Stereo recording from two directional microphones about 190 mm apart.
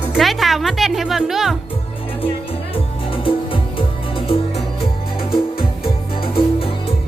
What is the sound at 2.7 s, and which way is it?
Music, 30° left (ahead or behind).